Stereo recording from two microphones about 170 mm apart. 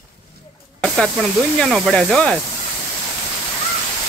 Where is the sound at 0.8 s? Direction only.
Centre (ahead or behind).